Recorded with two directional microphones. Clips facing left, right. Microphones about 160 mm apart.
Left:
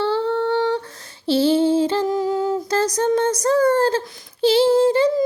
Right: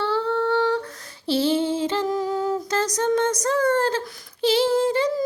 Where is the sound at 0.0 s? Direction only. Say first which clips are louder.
Left 3 dB; 30° left (ahead or behind).